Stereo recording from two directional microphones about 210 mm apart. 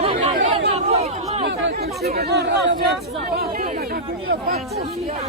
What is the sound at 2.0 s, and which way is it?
Speech, 50° right (ahead or behind).